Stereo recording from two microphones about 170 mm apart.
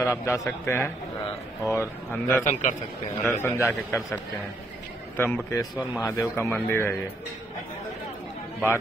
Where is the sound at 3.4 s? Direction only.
15° left (ahead or behind).